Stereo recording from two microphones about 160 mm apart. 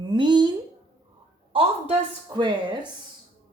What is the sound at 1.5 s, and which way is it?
A woman's voice, 30° right (ahead or behind).